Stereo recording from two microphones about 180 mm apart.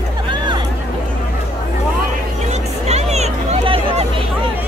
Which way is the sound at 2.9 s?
35° right (ahead or behind).